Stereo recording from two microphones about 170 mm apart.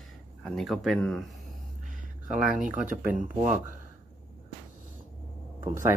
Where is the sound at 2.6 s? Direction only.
5° right (ahead or behind).